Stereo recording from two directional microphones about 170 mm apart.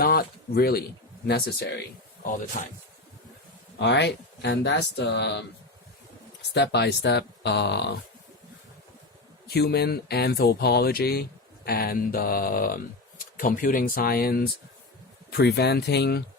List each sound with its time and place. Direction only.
0.0 s speech: 60° left (ahead or behind)
2.6 s speech: 55° left (ahead or behind)
3.8 s speech: 90° left
6.5 s speech: 80° left
9.5 s speech: 70° left (ahead or behind)